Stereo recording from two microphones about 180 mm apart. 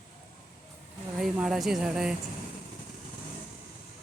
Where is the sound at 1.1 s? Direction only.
5° right (ahead or behind).